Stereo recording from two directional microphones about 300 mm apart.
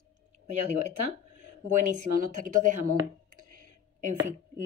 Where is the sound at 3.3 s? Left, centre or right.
Right.